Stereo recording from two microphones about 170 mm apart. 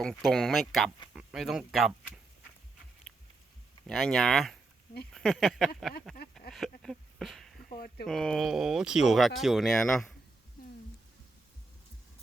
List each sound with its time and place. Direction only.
0.3 s speech: centre (ahead or behind)
3.8 s speech: centre (ahead or behind)
6.4 s a sound: centre (ahead or behind)
7.7 s speech: 60° left (ahead or behind)
8.0 s speech: centre (ahead or behind)